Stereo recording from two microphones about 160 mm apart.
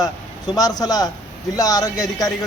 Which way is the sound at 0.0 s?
25° left (ahead or behind).